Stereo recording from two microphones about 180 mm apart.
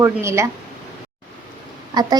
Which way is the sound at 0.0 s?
15° right (ahead or behind).